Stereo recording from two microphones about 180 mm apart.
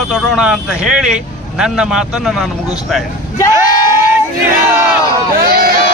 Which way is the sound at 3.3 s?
20° left (ahead or behind).